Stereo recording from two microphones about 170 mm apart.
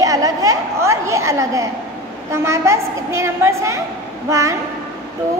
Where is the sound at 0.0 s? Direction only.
20° right (ahead or behind).